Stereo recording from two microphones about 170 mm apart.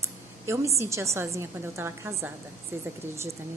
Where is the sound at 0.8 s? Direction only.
15° right (ahead or behind).